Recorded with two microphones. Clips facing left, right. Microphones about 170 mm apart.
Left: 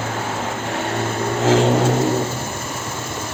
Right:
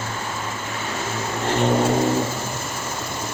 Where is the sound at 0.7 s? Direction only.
60° left (ahead or behind).